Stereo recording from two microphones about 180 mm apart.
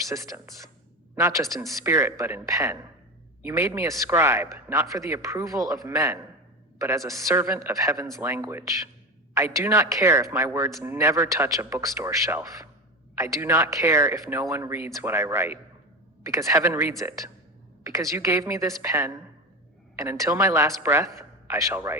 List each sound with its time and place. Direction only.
1.1 s speech: 15° right (ahead or behind)